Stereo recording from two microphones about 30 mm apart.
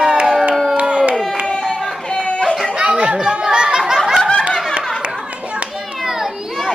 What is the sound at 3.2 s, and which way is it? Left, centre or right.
Chatter, right.